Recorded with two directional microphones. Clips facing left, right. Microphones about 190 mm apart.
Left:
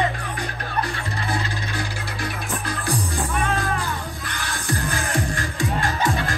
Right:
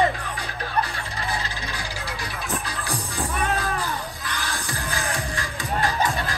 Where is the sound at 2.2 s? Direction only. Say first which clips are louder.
Left 3 dB; 55° left (ahead or behind).